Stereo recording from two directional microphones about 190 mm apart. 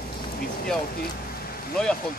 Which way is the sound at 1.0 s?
50° left (ahead or behind).